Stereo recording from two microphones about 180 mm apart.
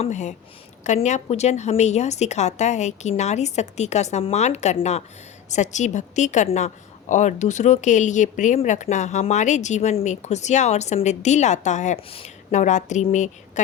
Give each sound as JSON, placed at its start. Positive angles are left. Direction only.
{"t": 0.0, "sound": "speech", "side_deg": 40}